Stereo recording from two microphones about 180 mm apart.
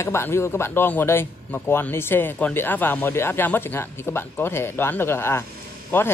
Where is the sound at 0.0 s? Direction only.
15° left (ahead or behind).